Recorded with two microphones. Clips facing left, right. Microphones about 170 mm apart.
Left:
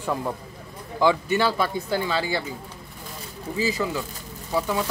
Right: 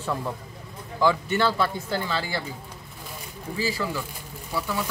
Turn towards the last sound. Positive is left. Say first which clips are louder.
# left 4 dB
turn(degrees=15)  # may be behind; listen again after turning